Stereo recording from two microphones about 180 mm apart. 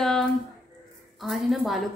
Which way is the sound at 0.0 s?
Centre (ahead or behind).